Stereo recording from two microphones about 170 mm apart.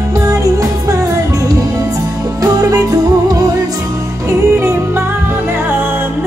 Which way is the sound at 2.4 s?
20° right (ahead or behind).